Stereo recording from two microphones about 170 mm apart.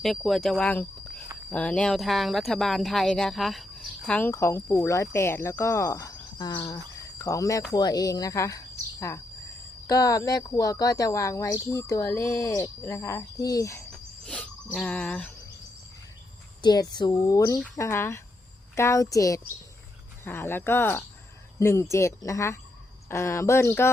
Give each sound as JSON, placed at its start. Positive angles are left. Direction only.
{"t": 0.0, "sound": "speech", "side_deg": 0}
{"t": 14.8, "sound": "speech", "side_deg": 5}
{"t": 16.6, "sound": "a child's voice", "side_deg": 25}